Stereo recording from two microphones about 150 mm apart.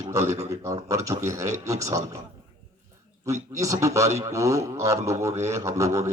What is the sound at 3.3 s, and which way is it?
A man's voice, 20° right (ahead or behind).